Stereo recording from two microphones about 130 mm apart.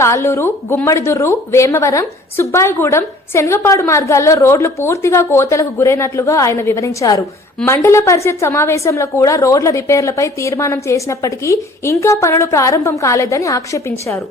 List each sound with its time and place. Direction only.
0.0 s a woman's voice: 20° left (ahead or behind)